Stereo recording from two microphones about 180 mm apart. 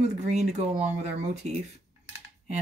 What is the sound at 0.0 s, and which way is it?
Speech, 40° right (ahead or behind).